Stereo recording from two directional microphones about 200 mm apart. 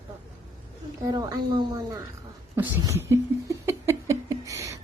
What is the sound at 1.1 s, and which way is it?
Speech, 20° right (ahead or behind).